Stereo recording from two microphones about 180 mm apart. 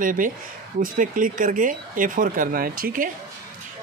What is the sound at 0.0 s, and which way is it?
Speech, 50° right (ahead or behind).